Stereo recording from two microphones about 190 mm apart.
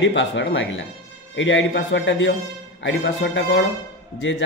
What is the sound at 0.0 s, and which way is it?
Speech, 70° left (ahead or behind).